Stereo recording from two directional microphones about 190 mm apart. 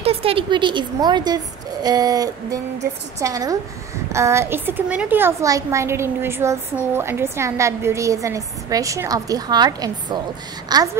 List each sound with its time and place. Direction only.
0.0 s a woman's voice: 30° right (ahead or behind)